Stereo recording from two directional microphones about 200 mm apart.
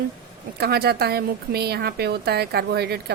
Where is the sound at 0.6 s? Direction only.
50° right (ahead or behind).